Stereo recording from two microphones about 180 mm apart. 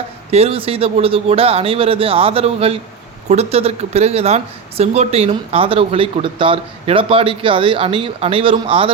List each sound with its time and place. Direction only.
0.3 s speech: 35° right (ahead or behind)